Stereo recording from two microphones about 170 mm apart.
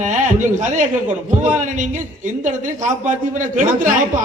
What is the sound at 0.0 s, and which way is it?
A man's voice, 45° right (ahead or behind).